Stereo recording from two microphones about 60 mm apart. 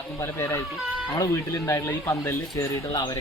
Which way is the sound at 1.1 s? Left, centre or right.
Left.